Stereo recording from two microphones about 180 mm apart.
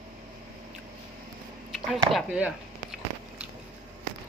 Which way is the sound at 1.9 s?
5° right (ahead or behind).